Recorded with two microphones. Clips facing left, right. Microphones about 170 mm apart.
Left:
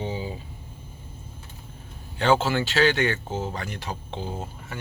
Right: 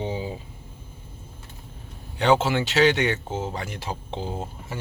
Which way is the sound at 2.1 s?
20° right (ahead or behind).